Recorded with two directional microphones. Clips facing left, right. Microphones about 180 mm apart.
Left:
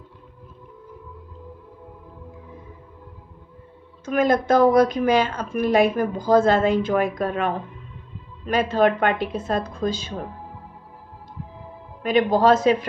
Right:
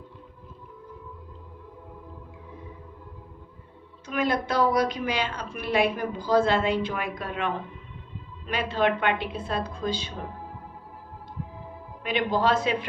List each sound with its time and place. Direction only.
4.0 s a woman's voice: 45° left (ahead or behind)
12.0 s a woman's voice: 45° left (ahead or behind)